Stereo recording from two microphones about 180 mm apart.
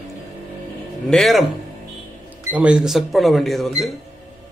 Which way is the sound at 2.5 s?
5° right (ahead or behind).